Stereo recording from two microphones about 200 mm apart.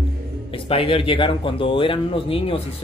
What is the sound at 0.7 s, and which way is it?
Speech, 30° left (ahead or behind).